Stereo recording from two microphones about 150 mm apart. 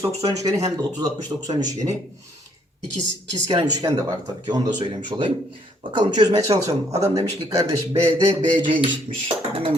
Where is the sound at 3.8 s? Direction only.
25° right (ahead or behind).